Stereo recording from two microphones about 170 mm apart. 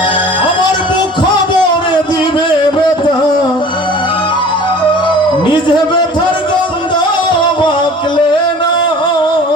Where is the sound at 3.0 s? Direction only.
30° left (ahead or behind).